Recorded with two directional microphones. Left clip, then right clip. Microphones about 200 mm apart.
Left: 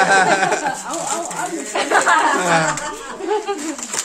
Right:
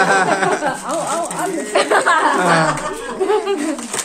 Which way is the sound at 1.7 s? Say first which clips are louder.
Right 1 dB; 45° right (ahead or behind).